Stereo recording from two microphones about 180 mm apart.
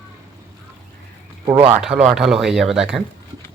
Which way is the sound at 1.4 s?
20° right (ahead or behind).